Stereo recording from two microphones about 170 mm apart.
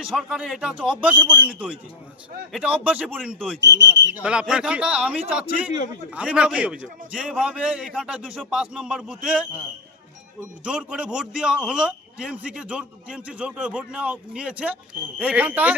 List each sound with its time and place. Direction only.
0.2 s a man's voice: 5° right (ahead or behind)
3.8 s speech: 90° right
4.2 s a man's voice: 5° right (ahead or behind)
10.6 s a man's voice: 5° right (ahead or behind)